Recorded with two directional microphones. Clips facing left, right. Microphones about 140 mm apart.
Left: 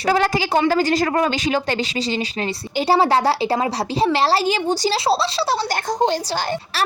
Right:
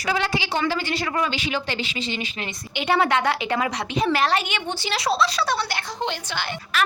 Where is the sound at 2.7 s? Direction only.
35° left (ahead or behind).